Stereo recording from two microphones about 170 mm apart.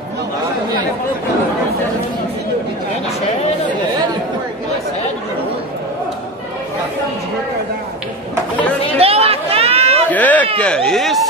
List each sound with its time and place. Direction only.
9.0 s chatter: 35° right (ahead or behind)
10.1 s a sound: 10° left (ahead or behind)
10.6 s speech: 5° left (ahead or behind)